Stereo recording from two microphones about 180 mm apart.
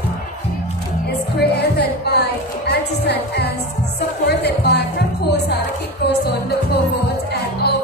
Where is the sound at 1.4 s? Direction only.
65° left (ahead or behind).